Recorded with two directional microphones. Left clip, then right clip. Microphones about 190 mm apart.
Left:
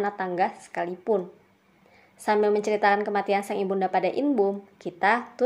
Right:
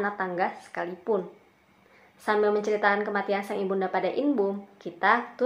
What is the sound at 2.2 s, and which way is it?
A woman's voice, 40° left (ahead or behind).